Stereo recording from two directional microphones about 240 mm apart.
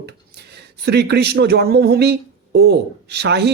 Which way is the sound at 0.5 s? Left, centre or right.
Right.